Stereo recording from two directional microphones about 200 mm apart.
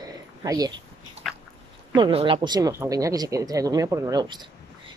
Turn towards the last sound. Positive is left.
turn(degrees=-20)  # may be behind; listen again after turning